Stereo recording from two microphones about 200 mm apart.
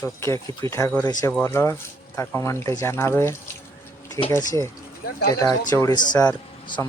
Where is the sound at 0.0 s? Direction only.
15° left (ahead or behind).